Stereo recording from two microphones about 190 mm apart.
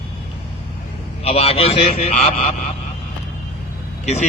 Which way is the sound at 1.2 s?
30° left (ahead or behind).